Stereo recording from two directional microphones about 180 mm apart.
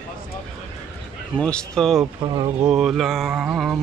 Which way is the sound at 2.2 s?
25° right (ahead or behind).